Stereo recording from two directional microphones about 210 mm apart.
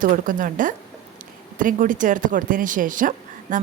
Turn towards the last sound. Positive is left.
turn(degrees=-40)  # may be behind; listen again after turning